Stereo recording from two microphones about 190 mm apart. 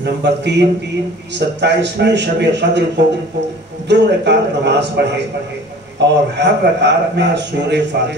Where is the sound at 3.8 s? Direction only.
65° right (ahead or behind).